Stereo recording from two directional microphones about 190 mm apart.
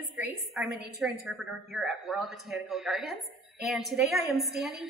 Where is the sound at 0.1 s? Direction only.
5° right (ahead or behind).